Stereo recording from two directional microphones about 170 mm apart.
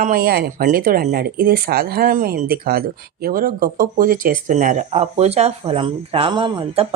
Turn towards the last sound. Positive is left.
turn(degrees=-30)  # may be behind; listen again after turning